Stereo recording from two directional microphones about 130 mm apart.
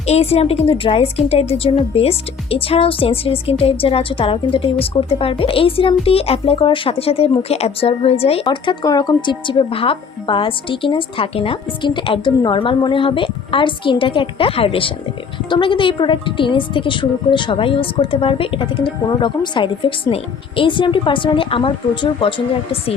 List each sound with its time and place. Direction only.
0.0 s speech: 55° left (ahead or behind)
8.4 s a woman's voice: 35° left (ahead or behind)